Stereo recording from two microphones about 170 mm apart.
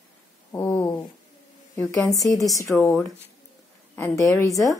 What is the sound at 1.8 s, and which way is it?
A woman's voice, 20° left (ahead or behind).